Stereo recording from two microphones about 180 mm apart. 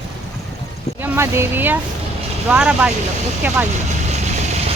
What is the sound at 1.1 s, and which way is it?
Speech, 15° right (ahead or behind).